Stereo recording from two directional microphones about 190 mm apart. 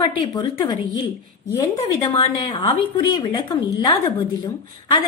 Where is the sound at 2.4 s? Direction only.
25° left (ahead or behind).